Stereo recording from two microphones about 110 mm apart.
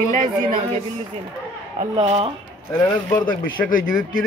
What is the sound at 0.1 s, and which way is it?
Speech, 90° right.